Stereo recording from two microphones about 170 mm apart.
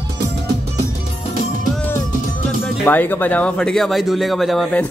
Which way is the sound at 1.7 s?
10° left (ahead or behind).